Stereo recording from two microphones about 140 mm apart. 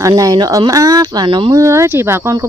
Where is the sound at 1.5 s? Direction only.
20° right (ahead or behind).